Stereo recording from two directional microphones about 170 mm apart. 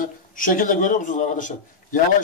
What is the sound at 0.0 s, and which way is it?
A man's voice, 55° left (ahead or behind).